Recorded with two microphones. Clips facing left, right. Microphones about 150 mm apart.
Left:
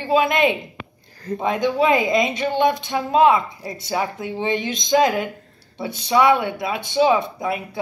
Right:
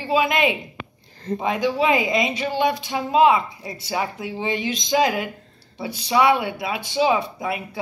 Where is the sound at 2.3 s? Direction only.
10° right (ahead or behind).